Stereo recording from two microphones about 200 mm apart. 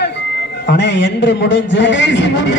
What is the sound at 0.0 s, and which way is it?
A man's voice, 60° left (ahead or behind).